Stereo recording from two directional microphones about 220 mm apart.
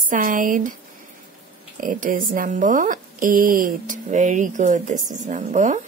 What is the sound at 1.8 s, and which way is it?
Speech, 35° right (ahead or behind).